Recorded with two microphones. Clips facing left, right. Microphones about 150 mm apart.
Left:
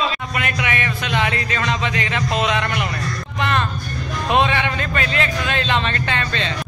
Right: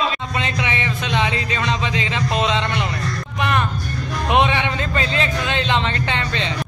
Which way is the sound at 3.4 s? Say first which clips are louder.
Even; 15° right (ahead or behind).